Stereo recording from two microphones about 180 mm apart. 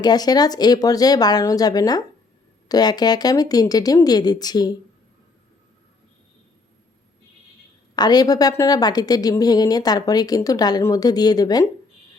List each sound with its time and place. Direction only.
0.0 s a woman's voice: 20° left (ahead or behind)
7.9 s a woman's voice: 20° left (ahead or behind)